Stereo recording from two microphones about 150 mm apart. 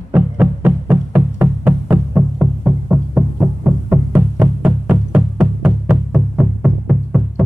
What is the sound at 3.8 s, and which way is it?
Music, 10° right (ahead or behind).